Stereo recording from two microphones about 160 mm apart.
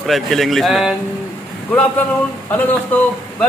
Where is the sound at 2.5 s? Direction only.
10° left (ahead or behind).